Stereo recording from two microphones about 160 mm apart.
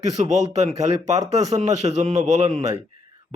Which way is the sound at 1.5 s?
45° right (ahead or behind).